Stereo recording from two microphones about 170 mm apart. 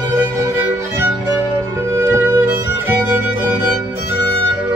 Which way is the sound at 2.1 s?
15° right (ahead or behind).